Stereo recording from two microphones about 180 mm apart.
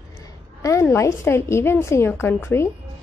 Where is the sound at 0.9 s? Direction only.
15° left (ahead or behind).